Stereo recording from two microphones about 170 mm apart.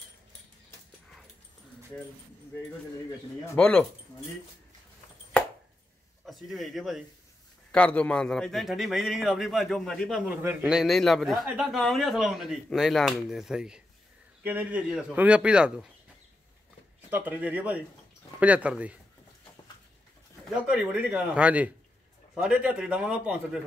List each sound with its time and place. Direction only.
3.5 s speech: 10° left (ahead or behind)
6.2 s a man's voice: centre (ahead or behind)
17.1 s speech: 10° right (ahead or behind)
20.4 s a man's voice: 5° right (ahead or behind)